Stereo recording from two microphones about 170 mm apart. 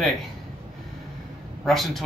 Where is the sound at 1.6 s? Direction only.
Centre (ahead or behind).